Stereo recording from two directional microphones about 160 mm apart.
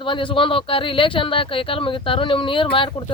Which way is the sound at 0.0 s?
30° left (ahead or behind).